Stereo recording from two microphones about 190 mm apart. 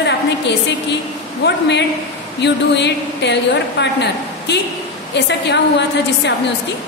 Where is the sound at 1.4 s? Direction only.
65° left (ahead or behind).